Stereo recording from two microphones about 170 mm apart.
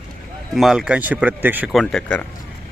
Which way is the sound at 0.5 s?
Centre (ahead or behind).